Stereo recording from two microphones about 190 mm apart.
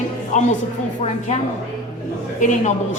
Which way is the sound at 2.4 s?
40° left (ahead or behind).